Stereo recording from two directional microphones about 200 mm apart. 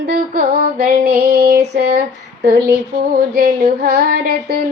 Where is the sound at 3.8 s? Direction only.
55° right (ahead or behind).